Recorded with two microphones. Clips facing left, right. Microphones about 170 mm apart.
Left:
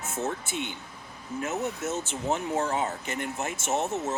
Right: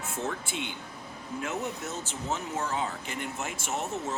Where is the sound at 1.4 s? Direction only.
40° left (ahead or behind).